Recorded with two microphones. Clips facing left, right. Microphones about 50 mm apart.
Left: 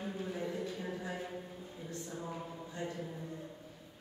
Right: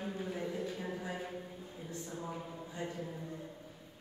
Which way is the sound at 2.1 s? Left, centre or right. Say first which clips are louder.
Right 1 dB; centre.